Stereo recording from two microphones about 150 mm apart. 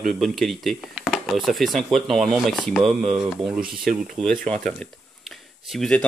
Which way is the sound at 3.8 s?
65° right (ahead or behind).